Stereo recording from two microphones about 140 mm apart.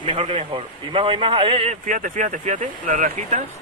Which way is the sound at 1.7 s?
65° right (ahead or behind).